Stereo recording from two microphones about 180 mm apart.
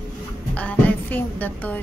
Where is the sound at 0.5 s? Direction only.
10° left (ahead or behind).